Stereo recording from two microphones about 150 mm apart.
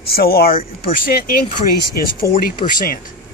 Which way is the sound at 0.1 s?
90° left.